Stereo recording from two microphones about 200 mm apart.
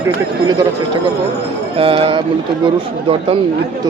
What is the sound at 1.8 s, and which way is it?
Speech, 25° right (ahead or behind).